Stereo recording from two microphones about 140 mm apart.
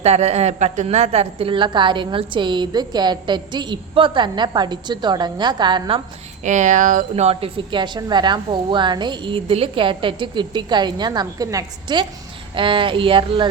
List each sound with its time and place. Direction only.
0.0 s a woman's voice: 50° right (ahead or behind); by 6.0 s 35° right (ahead or behind)
6.4 s a woman's voice: 60° right (ahead or behind); by 13.5 s 35° right (ahead or behind)